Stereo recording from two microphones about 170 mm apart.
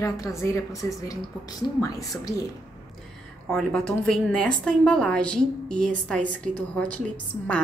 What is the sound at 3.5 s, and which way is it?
A woman's voice, 5° left (ahead or behind).